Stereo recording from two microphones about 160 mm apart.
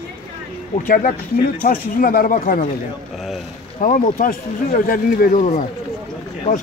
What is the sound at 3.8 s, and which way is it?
Speech, 60° left (ahead or behind).